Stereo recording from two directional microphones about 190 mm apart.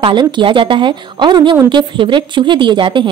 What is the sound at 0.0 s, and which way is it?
A woman's voice, 25° right (ahead or behind).